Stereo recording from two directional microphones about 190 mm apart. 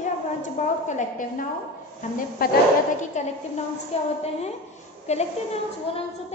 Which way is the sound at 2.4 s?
50° left (ahead or behind).